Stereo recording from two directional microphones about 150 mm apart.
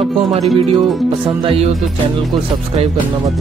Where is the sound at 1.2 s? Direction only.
40° right (ahead or behind).